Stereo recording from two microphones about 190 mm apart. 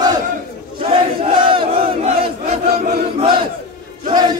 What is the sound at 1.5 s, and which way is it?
Battle cry, 30° right (ahead or behind).